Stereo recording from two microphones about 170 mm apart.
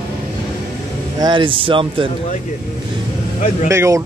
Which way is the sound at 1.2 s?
30° right (ahead or behind).